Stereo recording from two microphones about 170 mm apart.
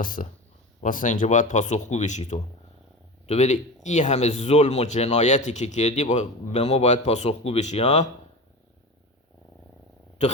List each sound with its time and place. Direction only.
0.0 s speech: 55° left (ahead or behind)